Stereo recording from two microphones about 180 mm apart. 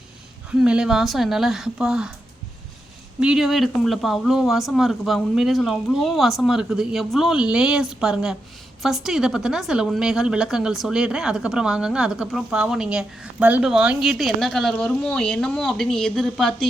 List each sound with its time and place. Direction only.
0.6 s a woman's voice: 5° right (ahead or behind)
3.2 s a woman's voice: 5° right (ahead or behind)